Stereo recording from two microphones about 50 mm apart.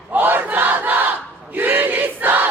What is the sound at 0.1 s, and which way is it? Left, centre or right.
Battle cry, right.